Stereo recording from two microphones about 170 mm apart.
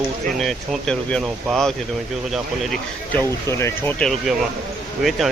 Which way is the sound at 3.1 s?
15° left (ahead or behind).